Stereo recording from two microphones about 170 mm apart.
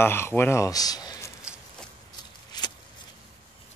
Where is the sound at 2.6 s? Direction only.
25° left (ahead or behind).